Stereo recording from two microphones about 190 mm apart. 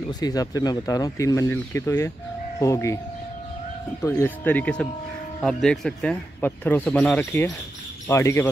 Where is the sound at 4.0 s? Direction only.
15° left (ahead or behind).